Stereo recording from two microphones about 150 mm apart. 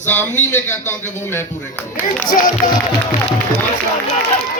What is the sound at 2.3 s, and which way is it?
Speech, 65° left (ahead or behind).